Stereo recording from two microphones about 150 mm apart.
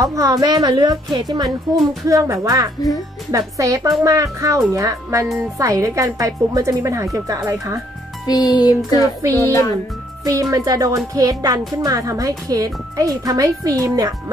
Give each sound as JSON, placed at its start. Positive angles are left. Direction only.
{"t": 0.0, "sound": "speech", "side_deg": -20}
{"t": 8.3, "sound": "music", "side_deg": 25}
{"t": 10.2, "sound": "speech", "side_deg": -25}